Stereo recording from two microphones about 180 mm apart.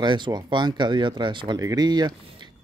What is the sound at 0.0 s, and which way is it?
Speech, 25° right (ahead or behind).